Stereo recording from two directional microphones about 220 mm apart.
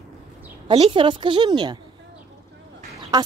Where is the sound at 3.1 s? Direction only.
15° right (ahead or behind).